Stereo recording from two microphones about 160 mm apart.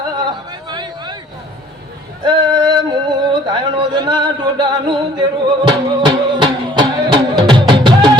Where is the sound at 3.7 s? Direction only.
30° right (ahead or behind).